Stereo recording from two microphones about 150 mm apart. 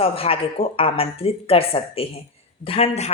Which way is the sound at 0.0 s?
40° left (ahead or behind).